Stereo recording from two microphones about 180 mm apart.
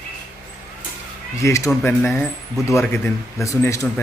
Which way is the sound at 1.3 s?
15° left (ahead or behind).